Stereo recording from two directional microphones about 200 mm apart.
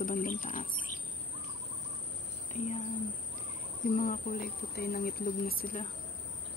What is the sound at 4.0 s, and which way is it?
Speech, 45° left (ahead or behind).